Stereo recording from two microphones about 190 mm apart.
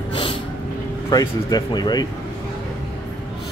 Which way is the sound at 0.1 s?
25° left (ahead or behind).